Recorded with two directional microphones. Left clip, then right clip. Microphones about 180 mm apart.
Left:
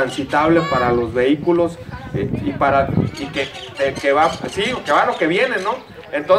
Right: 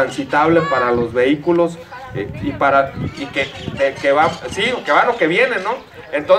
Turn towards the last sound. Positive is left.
turn(degrees=-30)  # may be behind; listen again after turning